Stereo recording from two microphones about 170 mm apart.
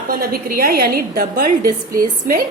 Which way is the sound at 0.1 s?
60° right (ahead or behind).